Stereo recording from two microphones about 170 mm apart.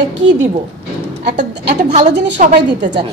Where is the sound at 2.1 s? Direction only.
90° right.